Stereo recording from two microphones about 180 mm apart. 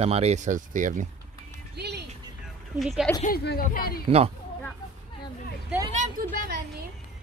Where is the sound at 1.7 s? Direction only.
65° right (ahead or behind).